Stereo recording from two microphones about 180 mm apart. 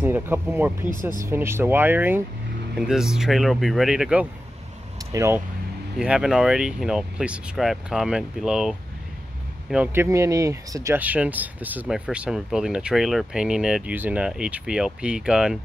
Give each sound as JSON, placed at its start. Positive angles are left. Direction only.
{"t": 0.0, "sound": "speech", "side_deg": -10}
{"t": 5.1, "sound": "speech", "side_deg": -15}
{"t": 5.9, "sound": "speech", "side_deg": -5}